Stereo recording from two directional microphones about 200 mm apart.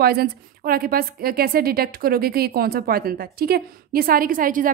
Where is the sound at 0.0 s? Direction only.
50° right (ahead or behind).